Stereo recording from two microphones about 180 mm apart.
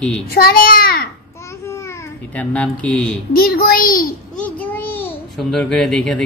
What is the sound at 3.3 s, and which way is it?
Speech, 55° left (ahead or behind).